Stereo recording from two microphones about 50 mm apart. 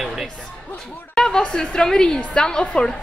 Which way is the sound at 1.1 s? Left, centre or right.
Centre.